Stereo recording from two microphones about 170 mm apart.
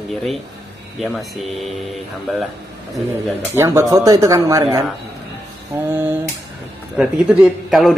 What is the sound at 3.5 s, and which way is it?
A man's voice, 15° right (ahead or behind).